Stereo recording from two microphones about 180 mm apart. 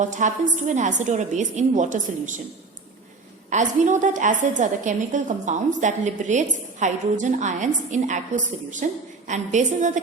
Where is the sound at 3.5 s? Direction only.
45° right (ahead or behind).